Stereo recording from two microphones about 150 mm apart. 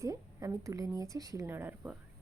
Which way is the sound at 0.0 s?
20° right (ahead or behind).